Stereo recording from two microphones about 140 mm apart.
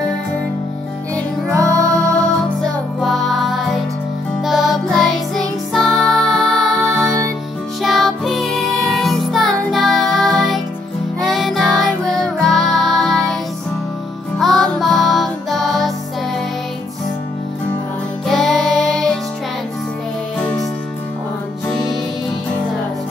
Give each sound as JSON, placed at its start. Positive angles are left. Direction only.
{"t": 1.8, "sound": "music", "side_deg": 5}
{"t": 14.4, "sound": "music", "side_deg": 0}
{"t": 18.2, "sound": "music", "side_deg": 0}